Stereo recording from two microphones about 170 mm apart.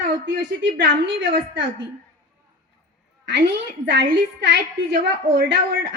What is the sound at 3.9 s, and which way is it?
A woman's voice, 90° right.